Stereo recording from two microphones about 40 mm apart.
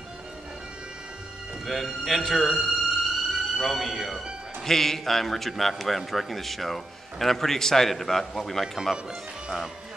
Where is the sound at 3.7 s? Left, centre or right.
Centre.